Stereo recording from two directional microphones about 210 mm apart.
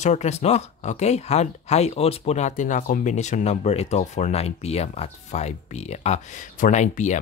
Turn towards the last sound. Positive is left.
turn(degrees=35)  # may be behind; listen again after turning